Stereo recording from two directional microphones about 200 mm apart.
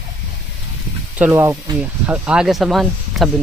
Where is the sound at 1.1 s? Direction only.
10° right (ahead or behind).